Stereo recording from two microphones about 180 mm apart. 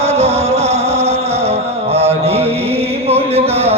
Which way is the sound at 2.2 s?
35° right (ahead or behind).